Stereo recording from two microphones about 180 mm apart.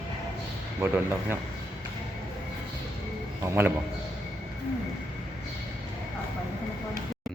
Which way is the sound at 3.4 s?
15° right (ahead or behind).